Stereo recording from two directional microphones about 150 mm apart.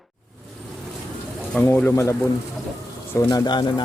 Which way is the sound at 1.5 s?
10° left (ahead or behind).